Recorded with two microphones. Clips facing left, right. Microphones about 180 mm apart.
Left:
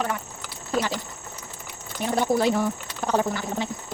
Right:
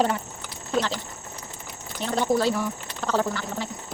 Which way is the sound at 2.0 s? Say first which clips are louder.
Left 1 dB; 10° left (ahead or behind).